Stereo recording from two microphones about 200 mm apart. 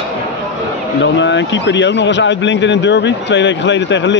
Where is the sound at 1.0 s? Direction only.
65° left (ahead or behind).